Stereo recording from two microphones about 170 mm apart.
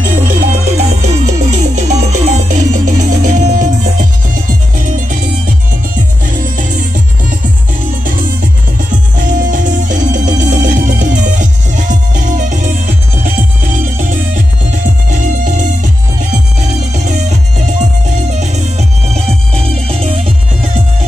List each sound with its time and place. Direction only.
0.0 s music: 50° right (ahead or behind)
8.9 s music: 50° right (ahead or behind)
16.9 s music: 45° right (ahead or behind)